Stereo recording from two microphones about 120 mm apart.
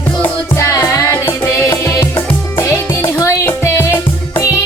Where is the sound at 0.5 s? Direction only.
25° left (ahead or behind).